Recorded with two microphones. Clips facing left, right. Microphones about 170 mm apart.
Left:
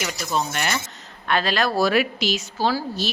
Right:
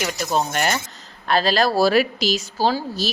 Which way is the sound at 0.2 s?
40° right (ahead or behind).